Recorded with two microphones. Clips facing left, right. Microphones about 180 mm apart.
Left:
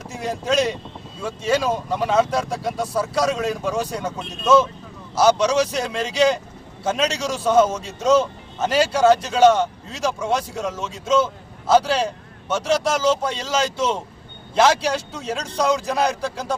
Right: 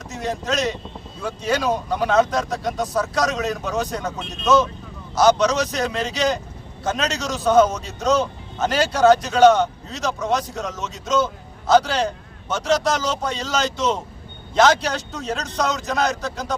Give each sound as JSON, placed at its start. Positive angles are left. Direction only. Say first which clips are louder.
{"t": 0.1, "sound": "a man's voice", "louder": "left 2 dB", "side_deg": 10}
{"t": 11.7, "sound": "speech", "louder": "even", "side_deg": 5}